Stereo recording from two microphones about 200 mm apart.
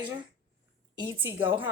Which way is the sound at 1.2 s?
10° right (ahead or behind).